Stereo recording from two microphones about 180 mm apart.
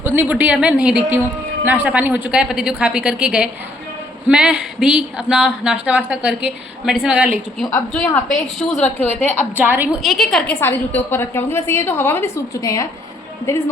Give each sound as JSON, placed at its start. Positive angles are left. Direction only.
{"t": 0.0, "sound": "a woman's voice", "side_deg": -10}
{"t": 7.7, "sound": "a woman's voice", "side_deg": 10}
{"t": 9.6, "sound": "a woman's voice", "side_deg": -10}
{"t": 10.0, "sound": "a woman's voice", "side_deg": 0}